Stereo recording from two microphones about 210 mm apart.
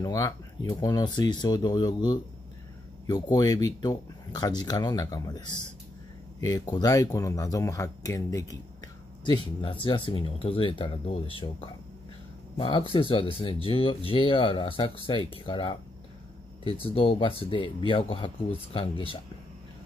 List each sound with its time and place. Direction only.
0.0 s speech: 15° left (ahead or behind)